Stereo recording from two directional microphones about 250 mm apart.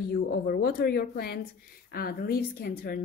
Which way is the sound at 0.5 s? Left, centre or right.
Left.